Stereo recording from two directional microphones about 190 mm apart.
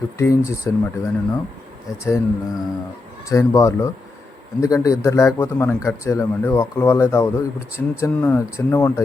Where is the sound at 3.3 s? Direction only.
15° left (ahead or behind).